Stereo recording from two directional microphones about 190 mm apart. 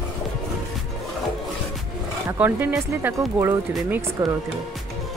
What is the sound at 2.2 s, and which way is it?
Speech, 10° right (ahead or behind).